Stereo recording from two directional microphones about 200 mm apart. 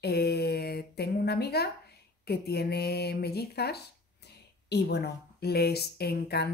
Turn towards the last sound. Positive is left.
turn(degrees=50)  # may be behind; listen again after turning